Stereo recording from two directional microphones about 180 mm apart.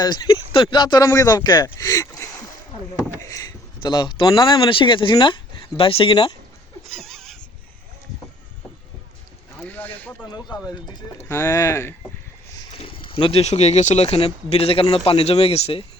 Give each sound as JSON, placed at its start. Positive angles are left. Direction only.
{"t": 0.0, "sound": "speech", "side_deg": 25}
{"t": 3.8, "sound": "speech", "side_deg": 25}
{"t": 6.8, "sound": "a sound", "side_deg": 0}
{"t": 9.6, "sound": "a sound", "side_deg": 10}
{"t": 10.2, "sound": "speech", "side_deg": 20}
{"t": 12.7, "sound": "speech", "side_deg": 30}